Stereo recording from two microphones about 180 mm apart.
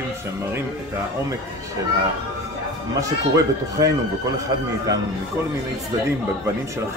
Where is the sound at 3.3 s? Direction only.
20° right (ahead or behind).